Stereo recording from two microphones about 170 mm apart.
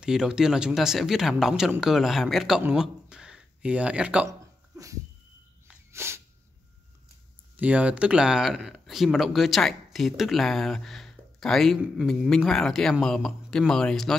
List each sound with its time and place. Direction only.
0.0 s speech: 5° right (ahead or behind)
4.3 s a sound: 20° right (ahead or behind)
5.9 s sneeze: 15° right (ahead or behind)
7.5 s speech: 10° right (ahead or behind)